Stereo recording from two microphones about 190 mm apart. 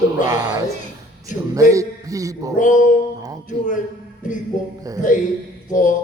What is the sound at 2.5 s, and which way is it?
Speech, 40° left (ahead or behind).